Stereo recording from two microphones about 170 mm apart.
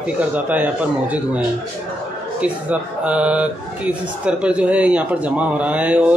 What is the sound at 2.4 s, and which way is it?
Speech, 5° right (ahead or behind).